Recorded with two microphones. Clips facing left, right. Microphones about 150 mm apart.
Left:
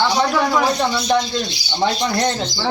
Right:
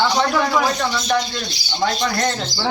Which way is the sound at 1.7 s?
20° left (ahead or behind).